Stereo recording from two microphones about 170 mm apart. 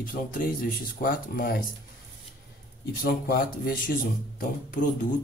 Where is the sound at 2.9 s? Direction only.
60° left (ahead or behind).